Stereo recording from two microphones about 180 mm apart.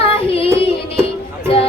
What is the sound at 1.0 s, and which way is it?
Music, 35° left (ahead or behind).